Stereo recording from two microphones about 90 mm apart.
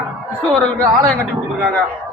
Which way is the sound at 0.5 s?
15° left (ahead or behind).